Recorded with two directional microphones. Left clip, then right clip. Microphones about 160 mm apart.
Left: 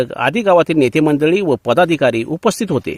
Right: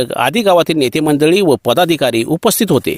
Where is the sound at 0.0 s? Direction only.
25° right (ahead or behind).